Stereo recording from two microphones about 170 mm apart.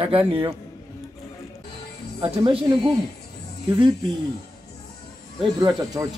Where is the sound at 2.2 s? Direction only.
35° right (ahead or behind).